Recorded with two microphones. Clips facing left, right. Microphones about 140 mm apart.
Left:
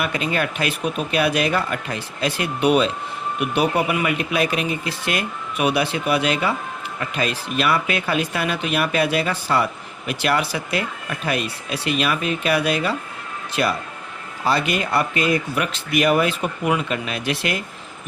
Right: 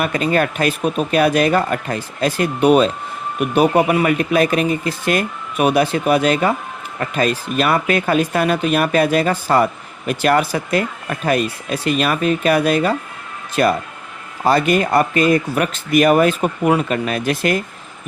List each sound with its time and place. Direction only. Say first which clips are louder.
0.0 s speech: right 5 dB; 45° right (ahead or behind)